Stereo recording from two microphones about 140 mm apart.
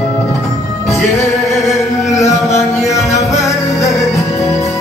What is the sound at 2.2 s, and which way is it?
Music, 20° left (ahead or behind).